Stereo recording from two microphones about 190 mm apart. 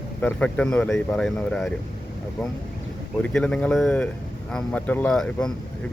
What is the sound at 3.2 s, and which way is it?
Speech, 5° left (ahead or behind).